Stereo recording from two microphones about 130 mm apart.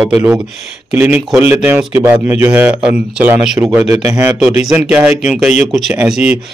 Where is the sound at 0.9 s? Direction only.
15° right (ahead or behind).